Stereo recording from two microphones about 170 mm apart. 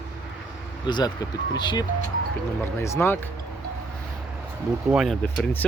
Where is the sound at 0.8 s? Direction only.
25° left (ahead or behind).